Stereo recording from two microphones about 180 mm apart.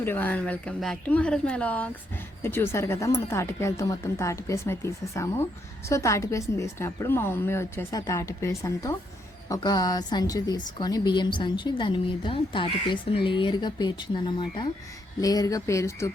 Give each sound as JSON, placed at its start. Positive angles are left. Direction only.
{"t": 0.0, "sound": "a woman's voice", "side_deg": 10}